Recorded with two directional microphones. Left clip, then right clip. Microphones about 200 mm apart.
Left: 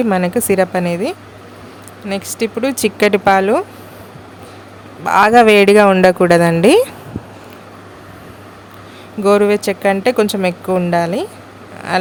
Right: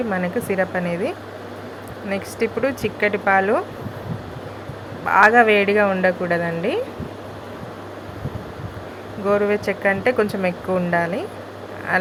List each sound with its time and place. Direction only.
0.1 s speech: 45° left (ahead or behind)
2.7 s speech: 55° left (ahead or behind); by 3.6 s 40° left (ahead or behind)
5.0 s speech: 40° left (ahead or behind); by 6.8 s 65° left (ahead or behind)
9.2 s speech: 45° left (ahead or behind)